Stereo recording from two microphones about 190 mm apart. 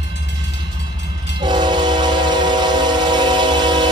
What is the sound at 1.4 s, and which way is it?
Train, 25° right (ahead or behind).